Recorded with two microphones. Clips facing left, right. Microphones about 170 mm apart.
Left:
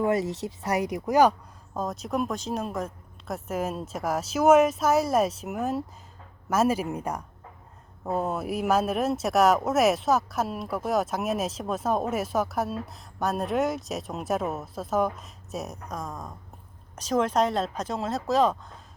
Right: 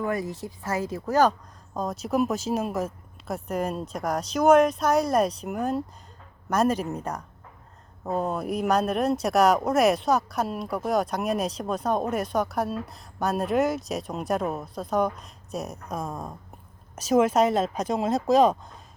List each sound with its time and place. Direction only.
0.0 s speech: 25° left (ahead or behind); by 18.5 s 15° right (ahead or behind)